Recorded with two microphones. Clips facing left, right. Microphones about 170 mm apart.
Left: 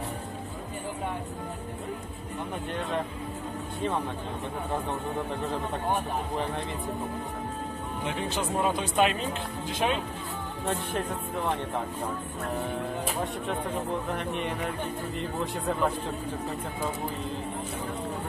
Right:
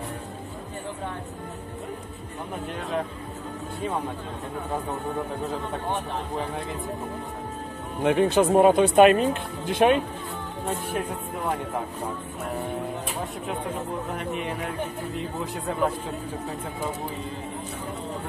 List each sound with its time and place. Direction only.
8.0 s speech: 55° right (ahead or behind)
10.7 s speech: 10° right (ahead or behind)
14.1 s speech: centre (ahead or behind)